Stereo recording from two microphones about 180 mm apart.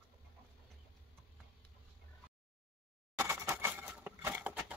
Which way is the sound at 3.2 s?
15° right (ahead or behind).